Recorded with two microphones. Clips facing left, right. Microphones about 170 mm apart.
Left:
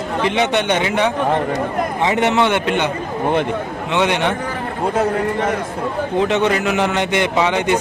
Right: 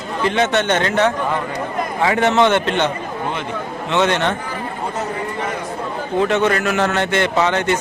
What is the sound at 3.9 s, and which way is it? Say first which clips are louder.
Speech: even; 15° left (ahead or behind).